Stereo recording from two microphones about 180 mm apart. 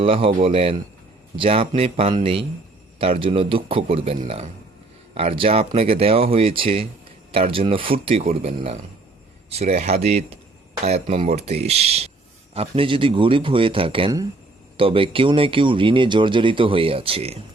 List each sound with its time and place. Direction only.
0.0 s speech: 30° right (ahead or behind)